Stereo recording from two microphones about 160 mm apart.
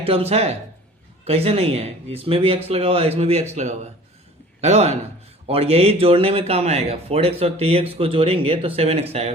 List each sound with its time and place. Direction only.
0.0 s speech: 40° right (ahead or behind)